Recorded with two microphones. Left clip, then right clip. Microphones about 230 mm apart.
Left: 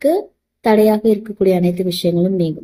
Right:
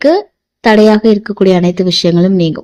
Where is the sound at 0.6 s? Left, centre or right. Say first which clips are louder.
Right 5 dB; right.